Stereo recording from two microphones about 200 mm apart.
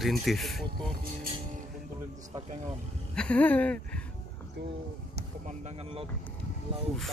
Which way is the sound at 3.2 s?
5° left (ahead or behind).